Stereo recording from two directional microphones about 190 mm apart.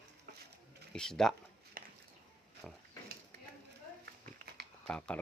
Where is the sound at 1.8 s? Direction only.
50° right (ahead or behind).